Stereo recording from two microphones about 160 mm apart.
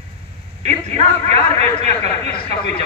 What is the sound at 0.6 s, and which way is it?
A man's voice, 40° right (ahead or behind).